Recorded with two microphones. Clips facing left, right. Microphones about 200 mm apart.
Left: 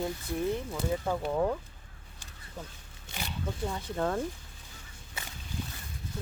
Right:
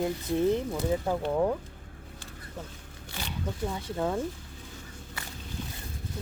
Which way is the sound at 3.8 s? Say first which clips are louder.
Even; 10° right (ahead or behind).